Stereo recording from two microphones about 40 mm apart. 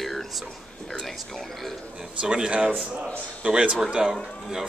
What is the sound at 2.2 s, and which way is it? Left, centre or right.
A man's voice, right.